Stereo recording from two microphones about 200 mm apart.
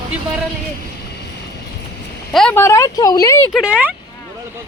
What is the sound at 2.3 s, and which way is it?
Speech, 5° left (ahead or behind).